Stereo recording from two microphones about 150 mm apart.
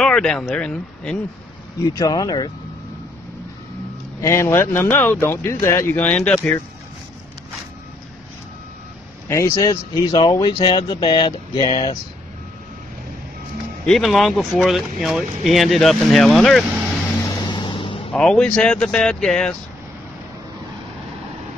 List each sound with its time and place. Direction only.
0.0 s speech: 5° left (ahead or behind)
1.8 s speech: 25° left (ahead or behind)
4.2 s speech: 20° left (ahead or behind)
9.3 s speech: 20° left (ahead or behind); by 11.9 s 35° left (ahead or behind)
13.8 s speech: centre (ahead or behind)
17.3 s vehicle: 30° left (ahead or behind)
18.1 s speech: 5° left (ahead or behind)